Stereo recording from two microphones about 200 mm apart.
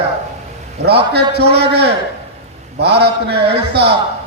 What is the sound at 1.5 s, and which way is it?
A man's voice, 55° right (ahead or behind).